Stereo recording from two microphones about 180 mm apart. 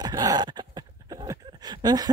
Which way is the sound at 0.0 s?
20° right (ahead or behind).